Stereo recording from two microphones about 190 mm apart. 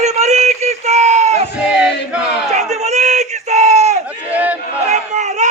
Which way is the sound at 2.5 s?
35° right (ahead or behind).